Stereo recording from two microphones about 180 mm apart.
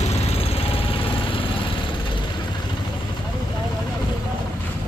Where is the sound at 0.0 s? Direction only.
35° left (ahead or behind).